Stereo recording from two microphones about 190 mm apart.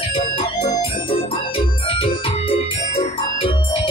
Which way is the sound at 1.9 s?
30° left (ahead or behind).